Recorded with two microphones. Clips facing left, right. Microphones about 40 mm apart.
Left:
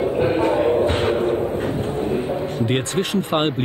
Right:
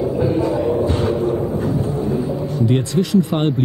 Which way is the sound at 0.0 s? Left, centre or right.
Left.